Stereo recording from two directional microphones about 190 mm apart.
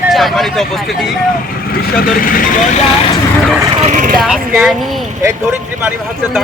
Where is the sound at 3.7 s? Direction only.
40° right (ahead or behind).